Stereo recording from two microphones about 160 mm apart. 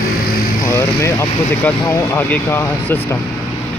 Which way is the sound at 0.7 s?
20° left (ahead or behind).